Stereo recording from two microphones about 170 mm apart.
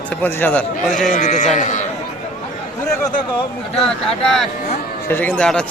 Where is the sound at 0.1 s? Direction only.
10° left (ahead or behind).